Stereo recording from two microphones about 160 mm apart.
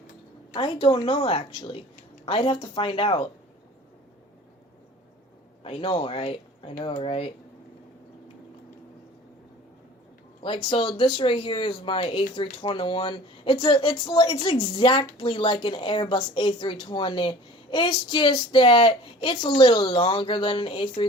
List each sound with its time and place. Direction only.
0.5 s speech: 30° left (ahead or behind)
5.6 s speech: 35° left (ahead or behind)
10.4 s speech: 35° left (ahead or behind)